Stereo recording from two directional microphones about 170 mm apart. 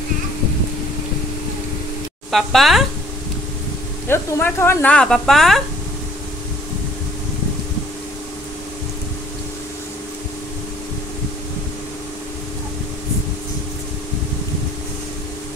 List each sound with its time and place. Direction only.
2.3 s speech: centre (ahead or behind)
4.1 s speech: 10° left (ahead or behind)